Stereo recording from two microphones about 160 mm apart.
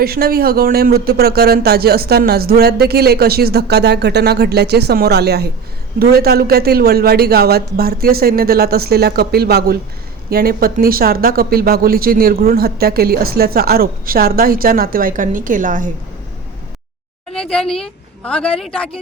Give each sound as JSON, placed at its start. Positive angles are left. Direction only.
{"t": 0.0, "sound": "speech", "side_deg": -75}
{"t": 6.0, "sound": "speech", "side_deg": -70}
{"t": 10.2, "sound": "speech", "side_deg": -70}
{"t": 17.3, "sound": "a woman's voice", "side_deg": 5}